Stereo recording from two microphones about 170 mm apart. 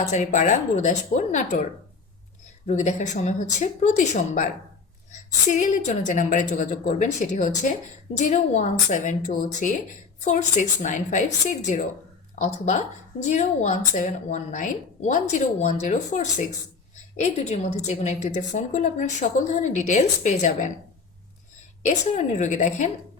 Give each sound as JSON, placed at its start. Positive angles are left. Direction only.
{"t": 0.0, "sound": "speech", "side_deg": 45}
{"t": 2.6, "sound": "speech", "side_deg": 40}
{"t": 5.5, "sound": "speech", "side_deg": 45}
{"t": 21.8, "sound": "speech", "side_deg": 45}